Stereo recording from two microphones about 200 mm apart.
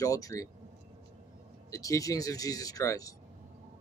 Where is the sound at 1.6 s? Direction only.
15° left (ahead or behind).